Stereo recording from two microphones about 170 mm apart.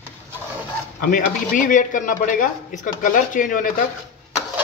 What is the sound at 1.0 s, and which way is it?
Speech, 50° left (ahead or behind).